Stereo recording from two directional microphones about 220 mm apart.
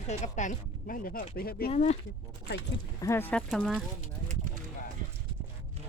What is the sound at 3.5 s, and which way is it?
Speech, centre (ahead or behind).